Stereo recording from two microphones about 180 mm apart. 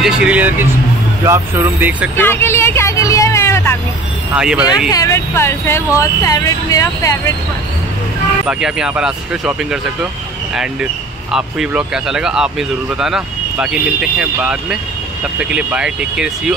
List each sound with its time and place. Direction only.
0.0 s speech: 5° right (ahead or behind)
2.1 s speech: 10° left (ahead or behind)
4.4 s speech: 5° right (ahead or behind)
4.9 s speech: 15° left (ahead or behind)
8.5 s speech: 5° right (ahead or behind)